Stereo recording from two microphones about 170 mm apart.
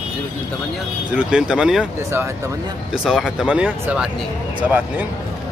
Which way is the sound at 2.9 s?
5° right (ahead or behind).